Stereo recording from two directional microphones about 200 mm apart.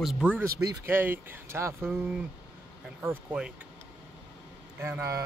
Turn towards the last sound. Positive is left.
turn(degrees=-15)  # may be behind; listen again after turning